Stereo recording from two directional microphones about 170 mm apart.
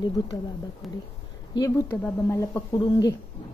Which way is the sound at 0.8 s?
Centre (ahead or behind).